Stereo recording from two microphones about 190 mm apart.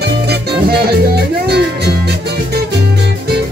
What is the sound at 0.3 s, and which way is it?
Music, 60° right (ahead or behind).